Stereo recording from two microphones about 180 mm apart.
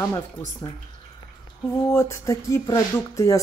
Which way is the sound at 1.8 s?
15° left (ahead or behind).